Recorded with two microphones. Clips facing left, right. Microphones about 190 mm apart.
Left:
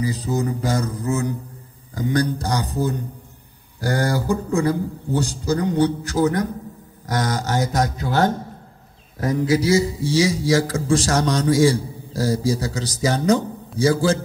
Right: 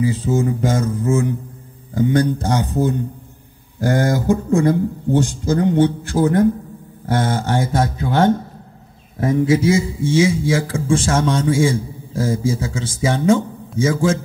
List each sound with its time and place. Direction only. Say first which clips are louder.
0.0 s a man's voice: right 4 dB; 40° left (ahead or behind)